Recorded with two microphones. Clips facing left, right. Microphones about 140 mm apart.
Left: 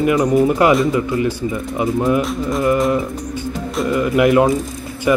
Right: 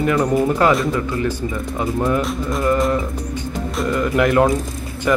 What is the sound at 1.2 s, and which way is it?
Speech, 10° left (ahead or behind).